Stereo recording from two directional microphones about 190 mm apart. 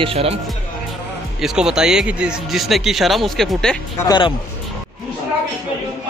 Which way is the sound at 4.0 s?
20° left (ahead or behind).